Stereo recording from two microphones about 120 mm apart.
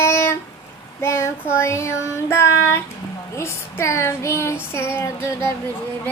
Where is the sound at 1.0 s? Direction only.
20° left (ahead or behind).